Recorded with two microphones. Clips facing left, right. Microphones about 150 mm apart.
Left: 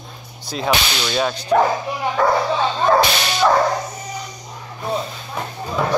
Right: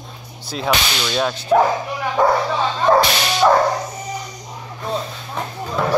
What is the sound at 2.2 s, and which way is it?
Dog, 15° right (ahead or behind).